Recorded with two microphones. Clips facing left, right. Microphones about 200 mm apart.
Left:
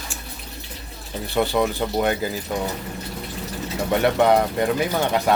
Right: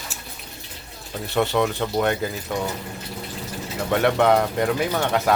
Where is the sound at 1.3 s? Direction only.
Centre (ahead or behind).